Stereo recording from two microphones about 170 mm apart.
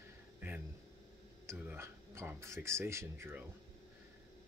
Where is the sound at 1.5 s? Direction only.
15° right (ahead or behind).